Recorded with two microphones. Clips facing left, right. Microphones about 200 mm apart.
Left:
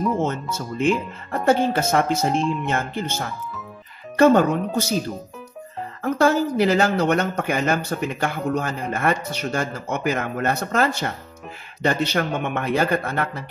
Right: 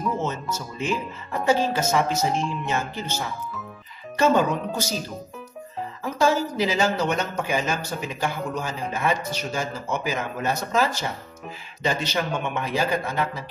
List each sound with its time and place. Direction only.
0.2 s speech: 55° left (ahead or behind)
6.0 s speech: 60° left (ahead or behind)